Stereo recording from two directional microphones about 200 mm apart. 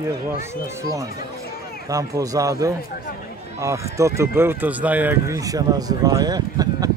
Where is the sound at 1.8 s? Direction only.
15° right (ahead or behind).